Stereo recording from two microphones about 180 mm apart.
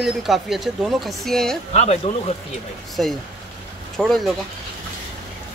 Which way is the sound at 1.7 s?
35° left (ahead or behind).